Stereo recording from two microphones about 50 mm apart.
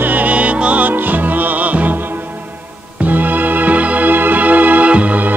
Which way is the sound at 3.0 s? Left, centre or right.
Right.